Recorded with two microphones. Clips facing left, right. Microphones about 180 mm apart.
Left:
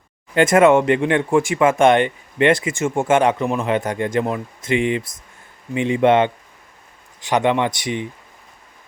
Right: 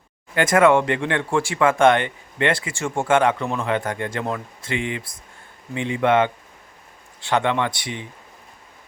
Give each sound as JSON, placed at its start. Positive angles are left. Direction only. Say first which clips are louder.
{"t": 0.3, "sound": "speech", "louder": "left 3 dB", "side_deg": 25}